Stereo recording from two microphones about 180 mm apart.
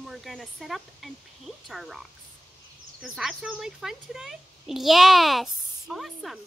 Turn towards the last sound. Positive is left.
turn(degrees=0)  # may be behind; listen again after turning